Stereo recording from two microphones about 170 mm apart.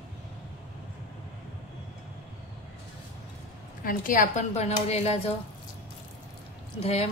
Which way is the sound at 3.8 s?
55° left (ahead or behind).